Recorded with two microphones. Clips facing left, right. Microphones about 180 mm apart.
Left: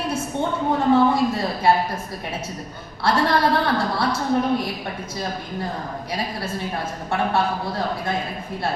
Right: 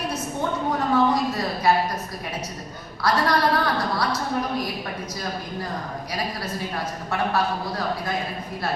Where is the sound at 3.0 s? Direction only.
25° left (ahead or behind).